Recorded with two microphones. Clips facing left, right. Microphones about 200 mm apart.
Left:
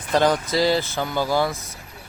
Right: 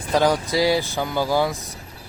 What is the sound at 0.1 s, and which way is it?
Speech, 10° right (ahead or behind).